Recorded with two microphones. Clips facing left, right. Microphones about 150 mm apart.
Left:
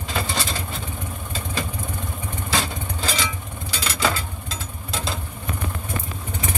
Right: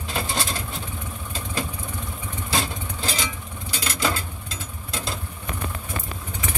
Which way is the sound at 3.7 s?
90° left.